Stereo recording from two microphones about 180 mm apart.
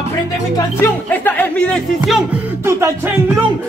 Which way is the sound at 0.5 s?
10° left (ahead or behind).